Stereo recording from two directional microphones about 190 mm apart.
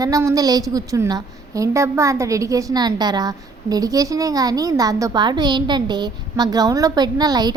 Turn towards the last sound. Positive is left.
turn(degrees=-20)  # may be behind; listen again after turning